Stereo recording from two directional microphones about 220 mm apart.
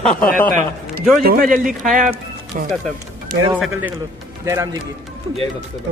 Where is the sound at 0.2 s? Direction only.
10° left (ahead or behind).